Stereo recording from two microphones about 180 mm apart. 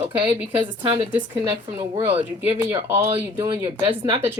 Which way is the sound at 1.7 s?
15° right (ahead or behind).